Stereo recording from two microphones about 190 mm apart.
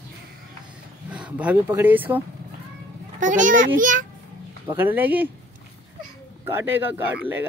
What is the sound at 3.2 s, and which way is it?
Speech, 40° right (ahead or behind).